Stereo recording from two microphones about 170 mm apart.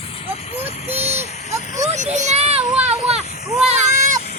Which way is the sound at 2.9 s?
40° right (ahead or behind).